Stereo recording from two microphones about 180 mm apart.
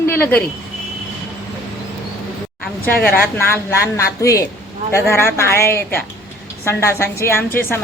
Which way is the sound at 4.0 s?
15° left (ahead or behind).